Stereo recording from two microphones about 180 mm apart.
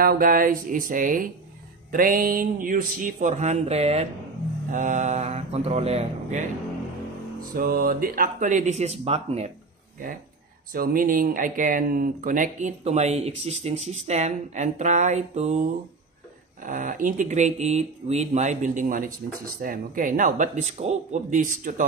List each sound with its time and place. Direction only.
0.0 s speech: 55° right (ahead or behind); by 6.4 s 35° right (ahead or behind)
7.3 s speech: 55° right (ahead or behind); by 9.5 s 35° right (ahead or behind)
10.7 s speech: 55° right (ahead or behind)
16.6 s speech: 45° right (ahead or behind)